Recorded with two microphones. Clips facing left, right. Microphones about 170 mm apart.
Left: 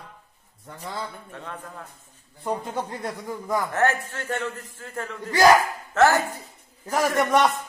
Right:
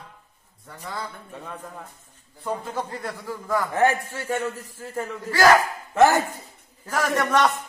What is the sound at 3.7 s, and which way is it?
A man's voice, 10° right (ahead or behind).